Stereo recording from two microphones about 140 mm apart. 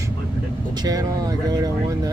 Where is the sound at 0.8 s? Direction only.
25° right (ahead or behind).